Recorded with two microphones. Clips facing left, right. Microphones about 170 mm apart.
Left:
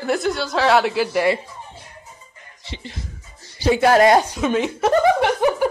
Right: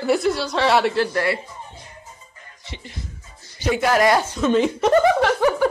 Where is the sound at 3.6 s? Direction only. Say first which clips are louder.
Left 4 dB; 30° left (ahead or behind).